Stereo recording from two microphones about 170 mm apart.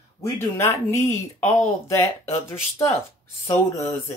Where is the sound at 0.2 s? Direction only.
15° left (ahead or behind).